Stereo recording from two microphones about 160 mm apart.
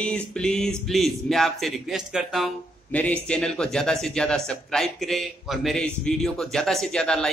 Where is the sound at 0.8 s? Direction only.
Centre (ahead or behind).